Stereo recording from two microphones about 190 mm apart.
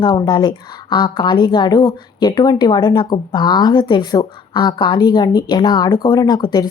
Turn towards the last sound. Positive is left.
turn(degrees=20)  # may be behind; listen again after turning